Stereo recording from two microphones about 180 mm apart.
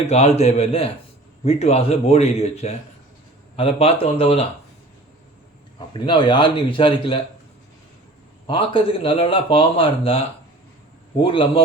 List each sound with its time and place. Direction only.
0.1 s a man's voice: 35° left (ahead or behind)
6.1 s speech: 25° left (ahead or behind)
8.4 s speech: 30° left (ahead or behind)